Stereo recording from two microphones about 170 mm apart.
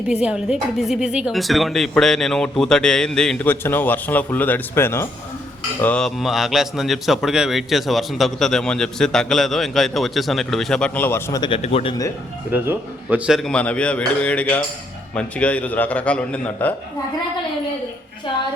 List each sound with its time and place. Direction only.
0.1 s a man's voice: 5° right (ahead or behind); by 11.3 s 10° left (ahead or behind)
11.3 s speech: 30° left (ahead or behind)
12.5 s a man's voice: 10° right (ahead or behind); by 16.7 s 10° left (ahead or behind)